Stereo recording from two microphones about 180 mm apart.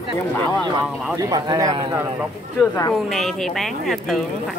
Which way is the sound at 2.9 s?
Centre (ahead or behind).